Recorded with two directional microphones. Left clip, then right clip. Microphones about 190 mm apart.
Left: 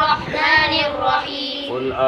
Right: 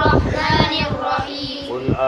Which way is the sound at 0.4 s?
5° left (ahead or behind).